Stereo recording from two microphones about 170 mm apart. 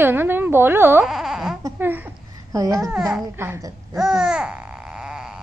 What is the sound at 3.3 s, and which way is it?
Speech, 15° right (ahead or behind).